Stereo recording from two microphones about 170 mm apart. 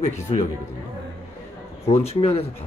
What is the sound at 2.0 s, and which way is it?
Speech, 35° left (ahead or behind).